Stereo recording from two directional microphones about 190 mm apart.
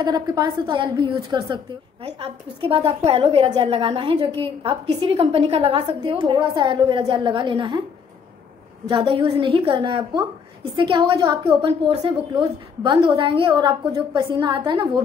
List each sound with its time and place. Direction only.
0.0 s a woman's voice: 20° right (ahead or behind)
8.8 s a woman's voice: 25° right (ahead or behind)